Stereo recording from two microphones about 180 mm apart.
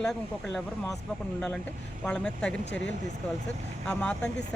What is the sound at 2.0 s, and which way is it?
Speech, 5° left (ahead or behind).